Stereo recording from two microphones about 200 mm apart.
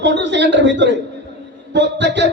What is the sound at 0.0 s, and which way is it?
A man's voice, 60° right (ahead or behind).